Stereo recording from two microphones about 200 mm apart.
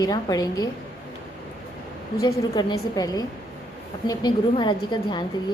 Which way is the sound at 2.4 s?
20° left (ahead or behind).